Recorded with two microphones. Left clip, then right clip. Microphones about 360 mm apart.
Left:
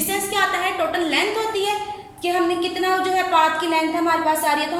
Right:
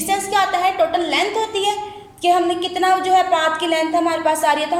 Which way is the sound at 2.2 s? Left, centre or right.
Right.